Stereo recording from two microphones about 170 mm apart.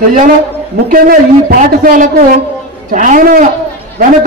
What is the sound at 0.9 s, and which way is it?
A man's voice, 55° right (ahead or behind).